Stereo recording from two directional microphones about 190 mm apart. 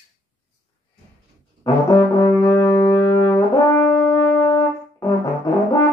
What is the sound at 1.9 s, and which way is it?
Brass instrument, 20° left (ahead or behind).